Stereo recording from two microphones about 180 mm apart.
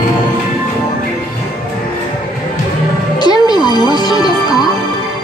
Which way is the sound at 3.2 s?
25° left (ahead or behind).